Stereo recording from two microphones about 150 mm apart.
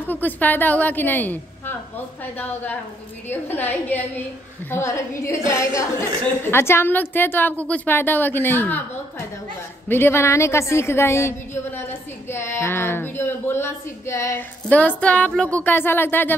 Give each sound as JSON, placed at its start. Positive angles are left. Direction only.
{"t": 0.1, "sound": "a woman's voice", "side_deg": 10}
{"t": 9.8, "sound": "a woman's voice", "side_deg": 15}